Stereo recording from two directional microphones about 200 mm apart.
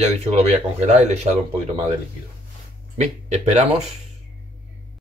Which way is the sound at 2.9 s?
35° right (ahead or behind).